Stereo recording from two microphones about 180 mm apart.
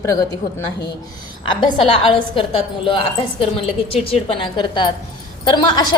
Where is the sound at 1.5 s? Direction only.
30° left (ahead or behind).